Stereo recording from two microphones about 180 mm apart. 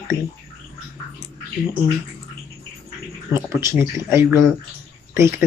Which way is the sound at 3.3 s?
15° right (ahead or behind).